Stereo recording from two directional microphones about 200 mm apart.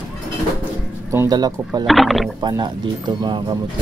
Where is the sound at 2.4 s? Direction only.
20° right (ahead or behind).